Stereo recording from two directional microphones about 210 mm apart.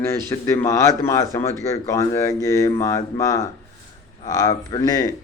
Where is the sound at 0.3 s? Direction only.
10° left (ahead or behind).